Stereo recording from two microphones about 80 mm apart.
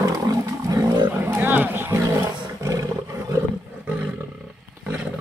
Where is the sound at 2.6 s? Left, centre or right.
Right.